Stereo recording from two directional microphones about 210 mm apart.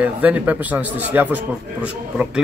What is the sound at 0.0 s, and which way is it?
A man's voice, 5° right (ahead or behind).